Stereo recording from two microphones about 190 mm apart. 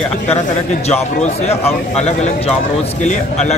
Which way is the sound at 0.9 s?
35° left (ahead or behind).